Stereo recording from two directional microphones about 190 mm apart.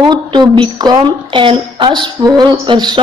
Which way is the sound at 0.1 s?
25° right (ahead or behind).